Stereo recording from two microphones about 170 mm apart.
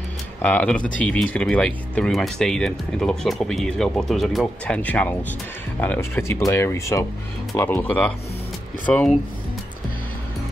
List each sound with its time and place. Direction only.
0.4 s speech: 10° left (ahead or behind)